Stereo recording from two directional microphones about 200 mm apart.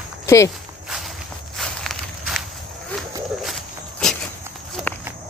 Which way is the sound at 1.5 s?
Centre (ahead or behind).